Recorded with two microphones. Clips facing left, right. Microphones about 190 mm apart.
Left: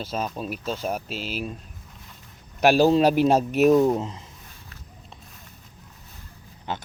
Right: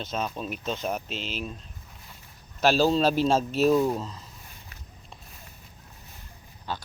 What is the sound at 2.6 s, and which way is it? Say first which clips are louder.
Speech: left 4 dB; 15° left (ahead or behind).